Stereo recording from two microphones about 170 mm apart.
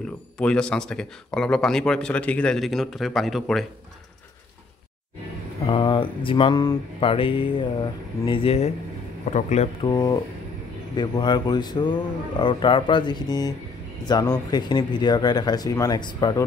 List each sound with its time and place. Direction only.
0.4 s speech: 5° left (ahead or behind)
5.6 s speech: 30° left (ahead or behind)
9.8 s speech: 25° left (ahead or behind)